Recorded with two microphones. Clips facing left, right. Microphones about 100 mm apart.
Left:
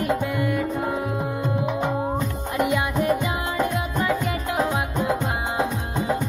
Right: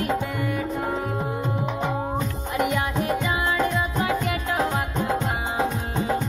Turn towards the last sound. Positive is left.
turn(degrees=15)  # may be behind; listen again after turning